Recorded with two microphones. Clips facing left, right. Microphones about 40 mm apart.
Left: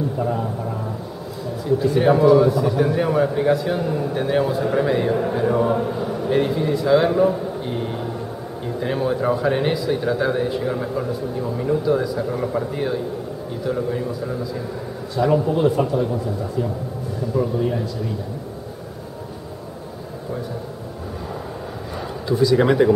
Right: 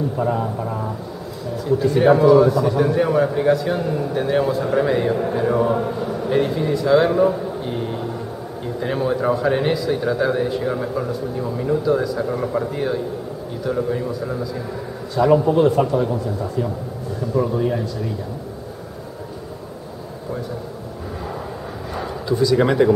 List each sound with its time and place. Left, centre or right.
0.2 s a man's voice: centre
1.8 s a man's voice: centre
7.8 s a sound: centre
8.8 s a man's voice: centre
15.8 s a man's voice: right
17.4 s a man's voice: centre
22.3 s a man's voice: centre